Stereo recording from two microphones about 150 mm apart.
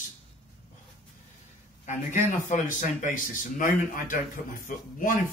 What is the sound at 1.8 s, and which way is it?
Speech, 55° left (ahead or behind).